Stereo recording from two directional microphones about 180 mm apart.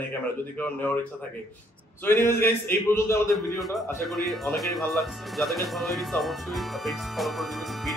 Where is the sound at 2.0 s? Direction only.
15° left (ahead or behind).